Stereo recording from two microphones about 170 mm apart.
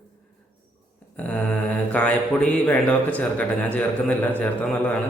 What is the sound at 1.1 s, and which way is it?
Speech, 10° left (ahead or behind).